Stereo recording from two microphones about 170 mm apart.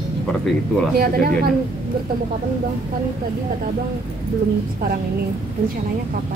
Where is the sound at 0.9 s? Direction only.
60° right (ahead or behind).